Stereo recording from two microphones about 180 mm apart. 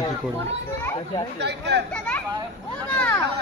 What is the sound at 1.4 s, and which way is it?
Speech, 70° right (ahead or behind).